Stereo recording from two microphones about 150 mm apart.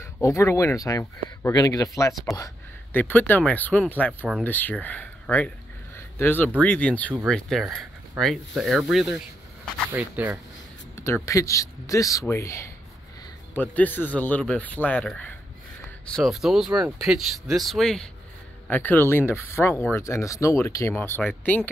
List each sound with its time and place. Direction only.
0.2 s speech: 20° left (ahead or behind)
2.9 s speech: 10° left (ahead or behind)
5.9 s a sound: 15° left (ahead or behind)
6.6 s speech: 10° left (ahead or behind); by 10.4 s 10° right (ahead or behind)
11.2 s speech: 20° left (ahead or behind); by 18.0 s centre (ahead or behind)
18.7 s speech: 10° left (ahead or behind)